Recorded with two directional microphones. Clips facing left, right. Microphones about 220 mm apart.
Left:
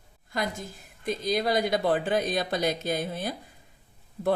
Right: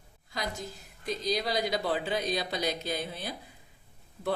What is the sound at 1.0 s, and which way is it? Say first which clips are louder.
Speech: left 4 dB; 50° left (ahead or behind).